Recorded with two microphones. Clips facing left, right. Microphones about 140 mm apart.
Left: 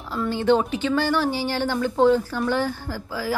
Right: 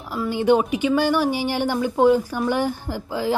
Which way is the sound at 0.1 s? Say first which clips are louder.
Right 2 dB; 15° right (ahead or behind).